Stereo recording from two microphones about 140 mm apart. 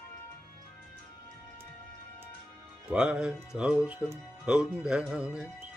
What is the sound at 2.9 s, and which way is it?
Speech, 5° right (ahead or behind).